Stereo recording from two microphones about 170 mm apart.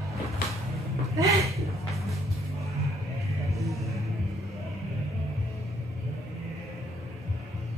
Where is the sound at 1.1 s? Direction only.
20° right (ahead or behind).